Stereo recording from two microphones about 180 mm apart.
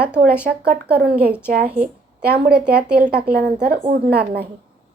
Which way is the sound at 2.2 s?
60° right (ahead or behind).